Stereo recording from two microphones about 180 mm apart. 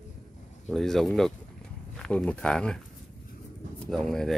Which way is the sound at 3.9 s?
Centre (ahead or behind).